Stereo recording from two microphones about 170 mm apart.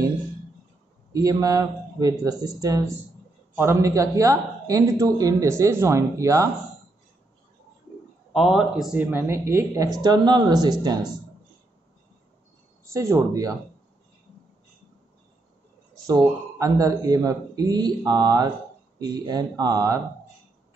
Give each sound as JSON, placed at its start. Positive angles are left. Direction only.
{"t": 1.1, "sound": "a man's voice", "side_deg": -20}
{"t": 8.3, "sound": "a man's voice", "side_deg": 0}
{"t": 9.1, "sound": "a man's voice", "side_deg": -15}
{"t": 12.9, "sound": "speech", "side_deg": -15}
{"t": 16.1, "sound": "a man's voice", "side_deg": -20}